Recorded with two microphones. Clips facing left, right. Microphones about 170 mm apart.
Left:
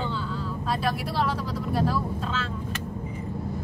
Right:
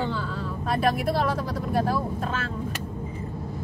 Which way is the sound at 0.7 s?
50° right (ahead or behind).